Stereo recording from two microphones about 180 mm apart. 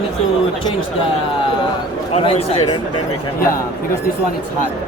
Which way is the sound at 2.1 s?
30° left (ahead or behind).